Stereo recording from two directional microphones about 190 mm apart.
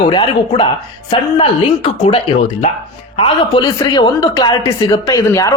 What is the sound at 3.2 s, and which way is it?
A man's voice, 25° left (ahead or behind).